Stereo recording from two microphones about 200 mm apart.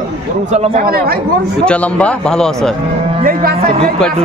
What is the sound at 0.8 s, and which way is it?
Speech, 50° right (ahead or behind).